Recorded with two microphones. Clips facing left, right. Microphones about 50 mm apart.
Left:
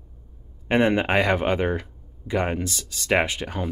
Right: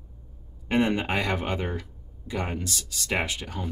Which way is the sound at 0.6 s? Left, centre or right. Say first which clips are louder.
Left 4 dB; left.